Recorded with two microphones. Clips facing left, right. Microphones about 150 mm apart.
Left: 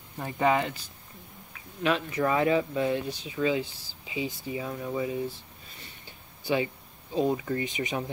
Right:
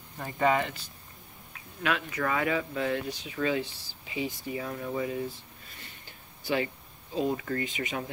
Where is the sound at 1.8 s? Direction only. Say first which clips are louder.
Left 4 dB; 25° left (ahead or behind).